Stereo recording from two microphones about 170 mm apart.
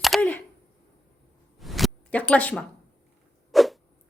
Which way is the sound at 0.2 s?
10° left (ahead or behind).